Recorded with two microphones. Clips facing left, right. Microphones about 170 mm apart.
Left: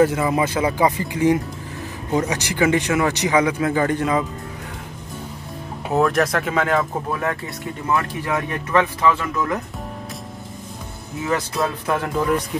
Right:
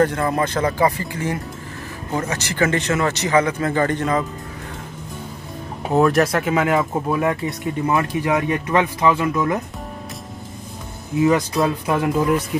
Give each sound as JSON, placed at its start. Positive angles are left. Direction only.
{"t": 0.0, "sound": "a man's voice", "side_deg": 5}
{"t": 5.9, "sound": "speech", "side_deg": 0}
{"t": 11.8, "sound": "speech", "side_deg": -15}